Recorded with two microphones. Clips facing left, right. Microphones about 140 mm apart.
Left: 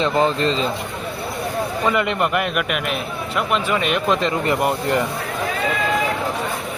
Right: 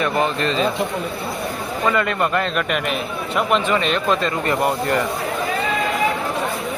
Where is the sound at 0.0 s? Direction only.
30° left (ahead or behind).